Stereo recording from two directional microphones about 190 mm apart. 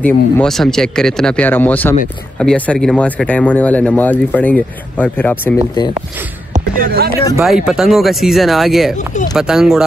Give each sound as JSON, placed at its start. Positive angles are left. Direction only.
{"t": 0.0, "sound": "speech", "side_deg": 5}
{"t": 6.5, "sound": "speech", "side_deg": -50}
{"t": 7.4, "sound": "speech", "side_deg": 0}